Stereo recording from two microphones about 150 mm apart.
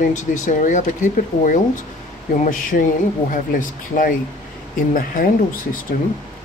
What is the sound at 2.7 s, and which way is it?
Speech, 65° left (ahead or behind).